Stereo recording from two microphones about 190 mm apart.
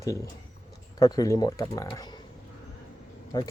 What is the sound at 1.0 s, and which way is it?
Speech, 15° left (ahead or behind).